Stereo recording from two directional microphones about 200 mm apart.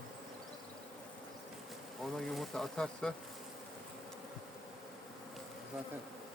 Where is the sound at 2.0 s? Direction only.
Centre (ahead or behind).